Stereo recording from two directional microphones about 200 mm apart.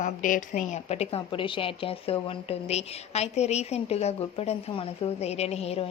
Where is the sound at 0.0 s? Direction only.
40° left (ahead or behind).